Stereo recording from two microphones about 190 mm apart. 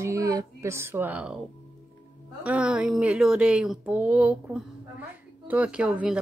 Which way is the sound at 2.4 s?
5° right (ahead or behind).